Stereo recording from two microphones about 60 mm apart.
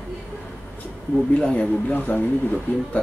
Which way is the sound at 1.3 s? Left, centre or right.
Centre.